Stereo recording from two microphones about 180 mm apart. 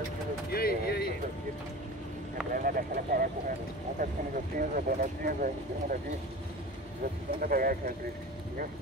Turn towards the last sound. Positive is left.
turn(degrees=-55)  # may be behind; listen again after turning